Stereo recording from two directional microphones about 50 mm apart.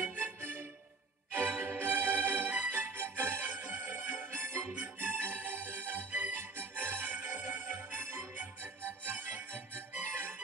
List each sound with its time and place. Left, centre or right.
0.2 s music: right
4.5 s music: right
7.7 s music: right